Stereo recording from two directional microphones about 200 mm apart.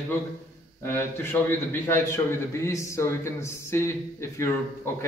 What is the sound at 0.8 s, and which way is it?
A man's voice, 10° left (ahead or behind).